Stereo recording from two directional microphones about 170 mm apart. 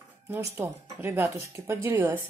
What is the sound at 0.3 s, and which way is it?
Speech, 15° right (ahead or behind).